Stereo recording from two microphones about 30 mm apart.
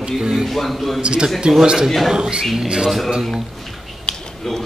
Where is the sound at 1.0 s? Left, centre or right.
Right.